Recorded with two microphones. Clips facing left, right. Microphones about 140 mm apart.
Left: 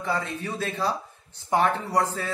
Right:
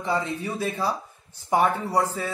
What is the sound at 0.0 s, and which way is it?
Speech, 15° right (ahead or behind).